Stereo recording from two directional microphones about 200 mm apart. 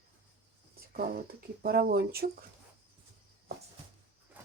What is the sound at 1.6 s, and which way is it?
Speech, 50° right (ahead or behind).